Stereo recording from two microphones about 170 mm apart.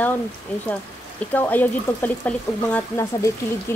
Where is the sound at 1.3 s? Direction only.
10° left (ahead or behind).